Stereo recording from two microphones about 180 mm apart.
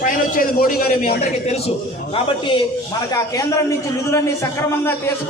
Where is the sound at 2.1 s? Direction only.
30° left (ahead or behind).